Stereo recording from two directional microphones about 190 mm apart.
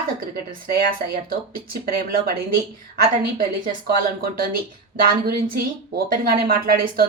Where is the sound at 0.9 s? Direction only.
50° right (ahead or behind).